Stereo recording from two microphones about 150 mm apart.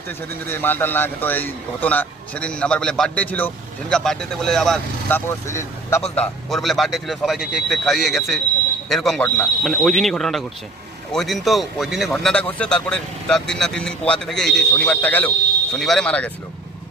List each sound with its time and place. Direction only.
0.1 s speech: 15° left (ahead or behind)
5.0 s speech: 15° left (ahead or behind)
6.1 s a man's voice: centre (ahead or behind)